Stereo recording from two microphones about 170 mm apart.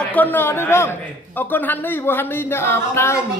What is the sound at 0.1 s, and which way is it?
Speech, 10° left (ahead or behind).